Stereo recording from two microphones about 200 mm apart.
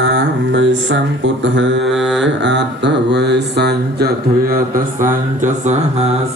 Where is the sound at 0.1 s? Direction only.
65° right (ahead or behind).